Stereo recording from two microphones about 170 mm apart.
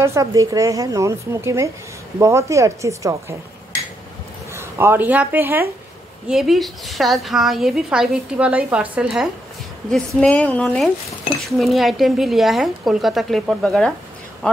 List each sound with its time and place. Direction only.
0.0 s speech: 20° right (ahead or behind)
4.6 s speech: 15° right (ahead or behind)
6.2 s a woman's voice: centre (ahead or behind)